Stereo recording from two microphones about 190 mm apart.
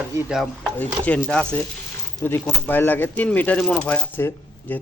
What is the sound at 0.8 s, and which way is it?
Speech, 10° left (ahead or behind).